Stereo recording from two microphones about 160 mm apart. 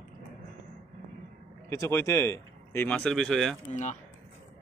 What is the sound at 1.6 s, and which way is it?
Speech, 20° left (ahead or behind).